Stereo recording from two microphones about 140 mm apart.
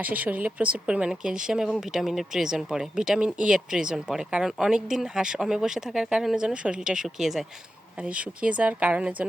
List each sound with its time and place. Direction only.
0.0 s speech: 10° right (ahead or behind)